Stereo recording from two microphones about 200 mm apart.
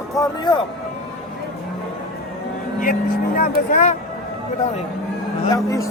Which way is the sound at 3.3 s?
45° left (ahead or behind).